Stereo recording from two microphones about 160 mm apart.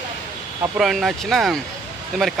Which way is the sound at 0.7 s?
Centre (ahead or behind).